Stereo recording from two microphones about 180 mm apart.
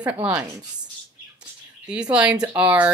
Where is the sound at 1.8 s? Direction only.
5° right (ahead or behind).